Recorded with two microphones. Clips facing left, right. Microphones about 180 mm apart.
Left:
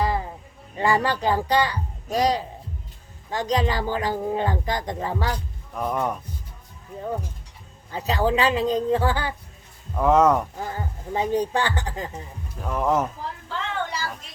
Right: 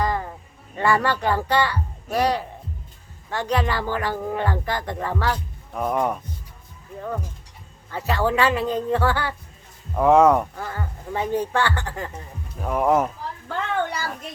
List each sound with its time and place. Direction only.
0.0 s music: 10° left (ahead or behind)
0.8 s speech: 15° left (ahead or behind)
3.5 s speech: 15° left (ahead or behind)
5.7 s speech: 5° right (ahead or behind)
7.9 s speech: 15° left (ahead or behind)
10.0 s speech: 5° right (ahead or behind)
10.6 s speech: 15° left (ahead or behind)
12.5 s speech: 10° right (ahead or behind)
13.5 s a sound: 55° right (ahead or behind)